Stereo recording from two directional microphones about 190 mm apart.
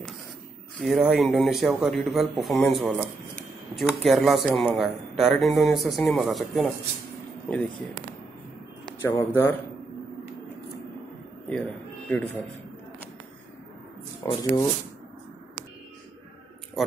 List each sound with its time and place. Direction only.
0.7 s speech: centre (ahead or behind)
9.2 s a man's voice: 10° left (ahead or behind)
12.1 s a man's voice: 10° left (ahead or behind)
14.2 s speech: 20° left (ahead or behind)
16.8 s speech: centre (ahead or behind)